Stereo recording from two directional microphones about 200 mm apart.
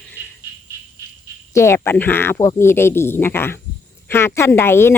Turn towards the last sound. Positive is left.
turn(degrees=10)  # may be behind; listen again after turning